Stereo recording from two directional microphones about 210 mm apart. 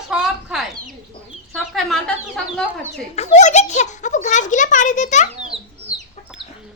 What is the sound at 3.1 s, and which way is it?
A child's voice, 30° left (ahead or behind).